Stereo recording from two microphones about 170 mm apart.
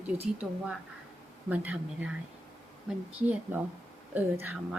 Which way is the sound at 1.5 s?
10° right (ahead or behind).